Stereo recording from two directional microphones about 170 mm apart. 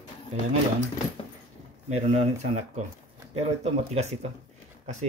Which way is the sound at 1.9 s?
40° right (ahead or behind).